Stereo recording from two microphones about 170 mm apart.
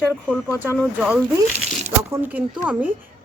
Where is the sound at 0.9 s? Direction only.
10° right (ahead or behind).